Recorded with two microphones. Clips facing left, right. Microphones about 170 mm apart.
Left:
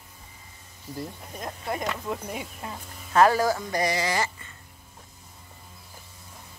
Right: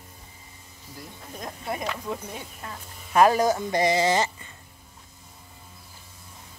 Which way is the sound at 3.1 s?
20° right (ahead or behind).